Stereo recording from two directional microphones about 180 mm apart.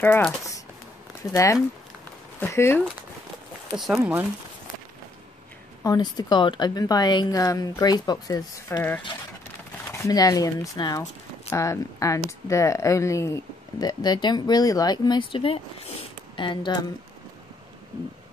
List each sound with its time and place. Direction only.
0.0 s speech: 10° left (ahead or behind)
3.7 s speech: centre (ahead or behind)
5.9 s speech: 25° left (ahead or behind)